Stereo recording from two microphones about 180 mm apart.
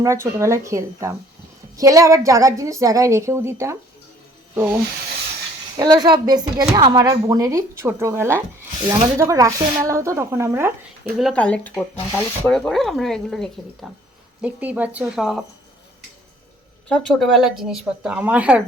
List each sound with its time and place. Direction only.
0.0 s a woman's voice: 15° right (ahead or behind)
11.2 s speech: 5° left (ahead or behind)
14.4 s a woman's voice: 10° right (ahead or behind)
16.9 s speech: centre (ahead or behind)